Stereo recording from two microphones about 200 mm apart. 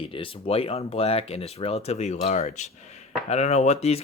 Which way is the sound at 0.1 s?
30° left (ahead or behind).